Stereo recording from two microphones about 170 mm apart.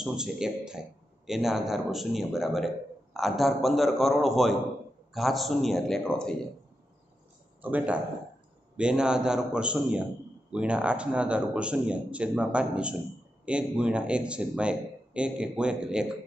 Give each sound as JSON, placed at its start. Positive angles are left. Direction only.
{"t": 0.0, "sound": "speech", "side_deg": -5}
{"t": 7.6, "sound": "speech", "side_deg": -10}